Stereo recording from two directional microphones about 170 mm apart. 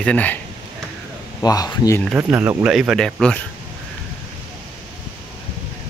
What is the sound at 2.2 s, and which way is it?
Speech, 10° right (ahead or behind).